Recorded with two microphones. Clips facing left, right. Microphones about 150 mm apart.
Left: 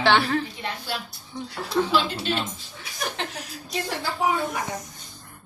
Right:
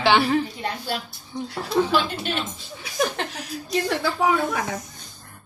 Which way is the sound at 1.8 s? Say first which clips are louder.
Right 2 dB; 15° right (ahead or behind).